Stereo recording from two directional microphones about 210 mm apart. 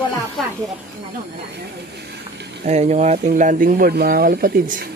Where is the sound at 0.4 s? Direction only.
Centre (ahead or behind).